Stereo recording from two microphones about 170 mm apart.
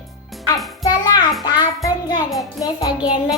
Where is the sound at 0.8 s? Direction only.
20° left (ahead or behind).